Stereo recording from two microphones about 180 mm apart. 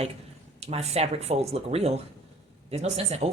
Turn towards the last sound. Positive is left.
turn(degrees=-35)  # may be behind; listen again after turning